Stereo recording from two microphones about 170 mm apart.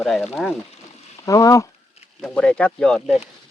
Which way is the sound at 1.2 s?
20° left (ahead or behind).